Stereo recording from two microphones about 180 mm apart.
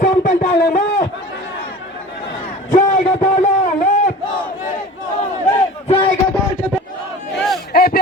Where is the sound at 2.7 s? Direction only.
40° left (ahead or behind).